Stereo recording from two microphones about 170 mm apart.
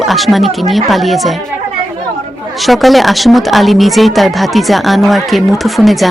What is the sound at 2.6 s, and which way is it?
Speech, centre (ahead or behind).